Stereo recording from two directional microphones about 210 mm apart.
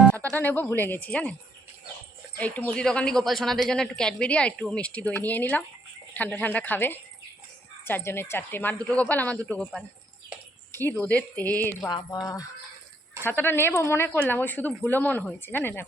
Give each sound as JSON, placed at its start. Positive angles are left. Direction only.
{"t": 0.1, "sound": "speech", "side_deg": 10}
{"t": 2.7, "sound": "a woman's voice", "side_deg": 5}
{"t": 11.9, "sound": "speech", "side_deg": 20}